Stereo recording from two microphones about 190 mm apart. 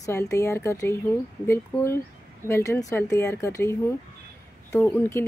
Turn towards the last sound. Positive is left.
turn(degrees=10)  # may be behind; listen again after turning